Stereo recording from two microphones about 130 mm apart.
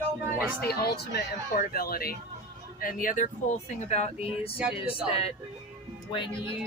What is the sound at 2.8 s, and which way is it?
Speech, 90° left.